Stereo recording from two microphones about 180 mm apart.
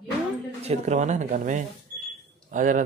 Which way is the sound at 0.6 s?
35° right (ahead or behind).